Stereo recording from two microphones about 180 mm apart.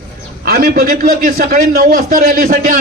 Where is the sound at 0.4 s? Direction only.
55° right (ahead or behind).